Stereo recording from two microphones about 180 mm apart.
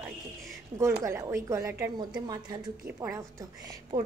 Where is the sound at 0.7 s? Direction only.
15° right (ahead or behind).